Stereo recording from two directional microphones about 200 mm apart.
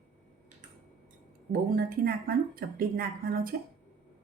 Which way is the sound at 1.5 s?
50° right (ahead or behind).